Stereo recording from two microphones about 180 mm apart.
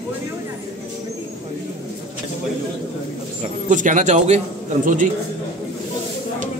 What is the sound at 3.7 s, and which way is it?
Speech, 45° right (ahead or behind).